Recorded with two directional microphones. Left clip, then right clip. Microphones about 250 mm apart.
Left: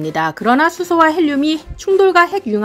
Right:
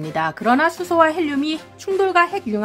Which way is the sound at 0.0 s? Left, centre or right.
Centre.